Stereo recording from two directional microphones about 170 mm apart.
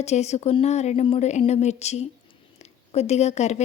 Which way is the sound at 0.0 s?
40° left (ahead or behind).